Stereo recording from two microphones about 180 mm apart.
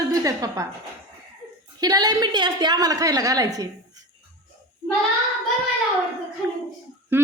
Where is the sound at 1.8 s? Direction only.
20° right (ahead or behind).